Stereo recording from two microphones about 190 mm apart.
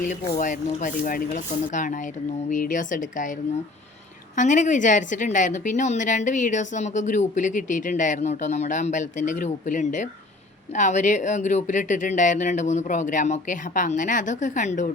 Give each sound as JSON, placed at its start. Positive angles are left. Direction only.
{"t": 0.0, "sound": "a woman's voice", "side_deg": 40}
{"t": 4.4, "sound": "a woman's voice", "side_deg": 40}